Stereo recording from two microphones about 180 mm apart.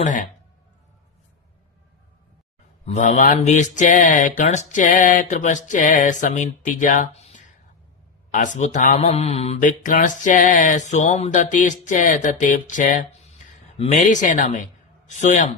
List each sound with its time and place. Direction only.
0.0 s speech: 45° left (ahead or behind)
2.8 s a man's voice: 40° left (ahead or behind)